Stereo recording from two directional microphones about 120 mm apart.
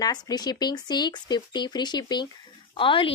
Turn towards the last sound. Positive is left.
turn(degrees=45)  # may be behind; listen again after turning